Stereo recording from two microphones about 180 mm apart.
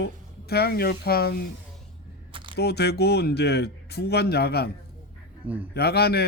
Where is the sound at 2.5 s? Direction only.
65° left (ahead or behind).